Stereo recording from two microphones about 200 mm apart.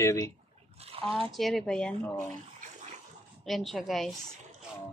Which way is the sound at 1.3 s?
Centre (ahead or behind).